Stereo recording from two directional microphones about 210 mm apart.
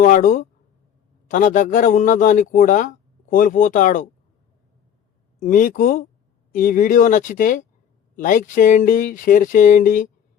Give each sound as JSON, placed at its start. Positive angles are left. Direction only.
{"t": 0.0, "sound": "a man's voice", "side_deg": 40}
{"t": 5.4, "sound": "a man's voice", "side_deg": 40}